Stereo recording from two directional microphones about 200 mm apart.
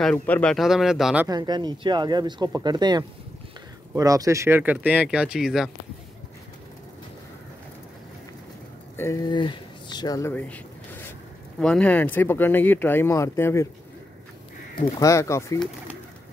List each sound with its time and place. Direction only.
0.0 s speech: 5° left (ahead or behind)
1.2 s speech: 20° right (ahead or behind); by 5.7 s centre (ahead or behind)
8.9 s a sound: 15° left (ahead or behind)
11.6 s speech: 5° left (ahead or behind)
15.0 s speech: 15° left (ahead or behind)